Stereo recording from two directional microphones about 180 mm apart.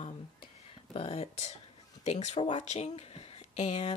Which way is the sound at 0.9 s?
30° left (ahead or behind).